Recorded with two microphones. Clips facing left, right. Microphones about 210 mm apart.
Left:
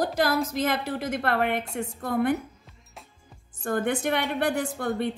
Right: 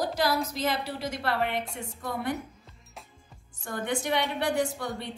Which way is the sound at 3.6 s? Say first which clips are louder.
Left 5 dB; 50° left (ahead or behind).